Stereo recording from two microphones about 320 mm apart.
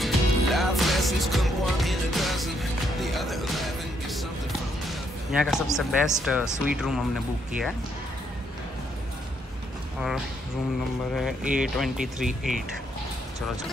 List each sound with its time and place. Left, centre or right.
0.0 s music: centre
5.4 s speech: centre
9.9 s speech: centre